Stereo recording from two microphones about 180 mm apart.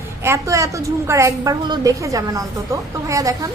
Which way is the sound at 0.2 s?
15° right (ahead or behind).